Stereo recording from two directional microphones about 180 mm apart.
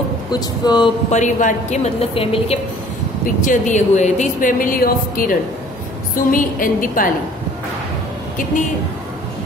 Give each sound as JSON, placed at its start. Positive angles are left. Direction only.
{"t": 0.3, "sound": "speech", "side_deg": 25}
{"t": 1.1, "sound": "a woman's voice", "side_deg": 40}
{"t": 3.4, "sound": "a woman's voice", "side_deg": 45}